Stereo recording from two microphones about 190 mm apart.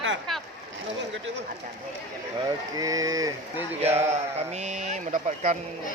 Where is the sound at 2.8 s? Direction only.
20° right (ahead or behind).